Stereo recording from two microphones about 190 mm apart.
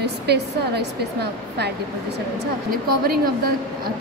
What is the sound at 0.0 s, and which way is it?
A woman's voice, 60° right (ahead or behind).